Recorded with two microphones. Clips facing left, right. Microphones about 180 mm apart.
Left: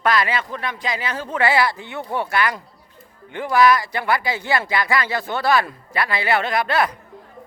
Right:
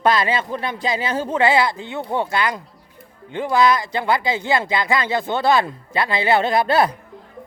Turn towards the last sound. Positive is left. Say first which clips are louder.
# right 4 dB
turn(degrees=-30)  # may be behind; listen again after turning